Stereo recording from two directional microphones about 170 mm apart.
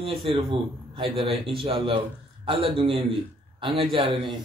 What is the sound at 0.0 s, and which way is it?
A man's voice, 35° right (ahead or behind).